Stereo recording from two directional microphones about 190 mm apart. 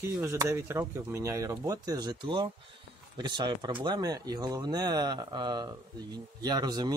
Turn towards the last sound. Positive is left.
turn(degrees=-20)  # may be behind; listen again after turning